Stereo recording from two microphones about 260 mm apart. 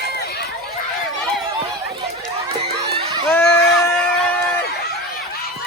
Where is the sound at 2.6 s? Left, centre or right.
Right.